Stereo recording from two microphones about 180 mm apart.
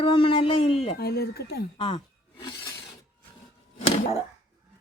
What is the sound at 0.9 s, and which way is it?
Speech, 60° left (ahead or behind).